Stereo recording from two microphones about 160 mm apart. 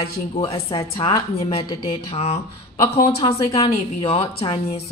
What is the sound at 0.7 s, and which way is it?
A woman's voice, 35° left (ahead or behind).